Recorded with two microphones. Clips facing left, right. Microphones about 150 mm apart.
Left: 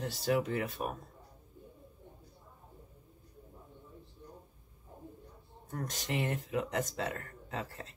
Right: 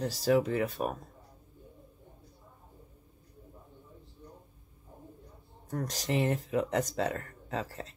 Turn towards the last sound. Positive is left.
turn(degrees=-35)  # may be behind; listen again after turning